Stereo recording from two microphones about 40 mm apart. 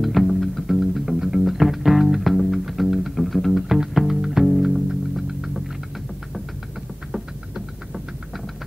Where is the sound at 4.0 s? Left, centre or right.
Centre.